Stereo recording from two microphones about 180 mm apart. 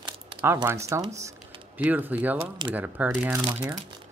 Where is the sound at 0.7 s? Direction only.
15° right (ahead or behind).